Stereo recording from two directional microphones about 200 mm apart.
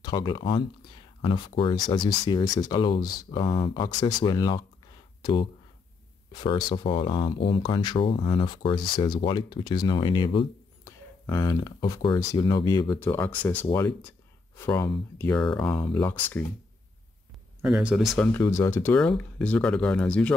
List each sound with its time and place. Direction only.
0.0 s speech: 20° left (ahead or behind)
12.9 s speech: 10° left (ahead or behind)
17.6 s speech: 5° right (ahead or behind)